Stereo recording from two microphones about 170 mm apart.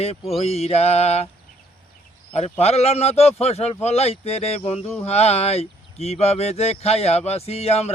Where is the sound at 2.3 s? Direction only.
40° left (ahead or behind).